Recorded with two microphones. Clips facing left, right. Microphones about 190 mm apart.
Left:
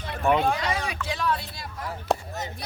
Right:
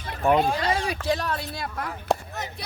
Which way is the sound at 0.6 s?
35° right (ahead or behind).